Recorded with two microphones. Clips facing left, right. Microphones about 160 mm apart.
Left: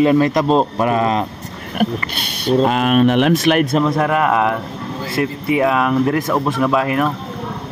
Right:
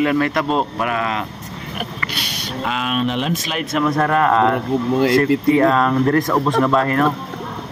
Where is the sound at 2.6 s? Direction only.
50° left (ahead or behind).